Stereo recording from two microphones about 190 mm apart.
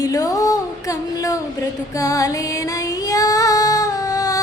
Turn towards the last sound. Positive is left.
turn(degrees=20)  # may be behind; listen again after turning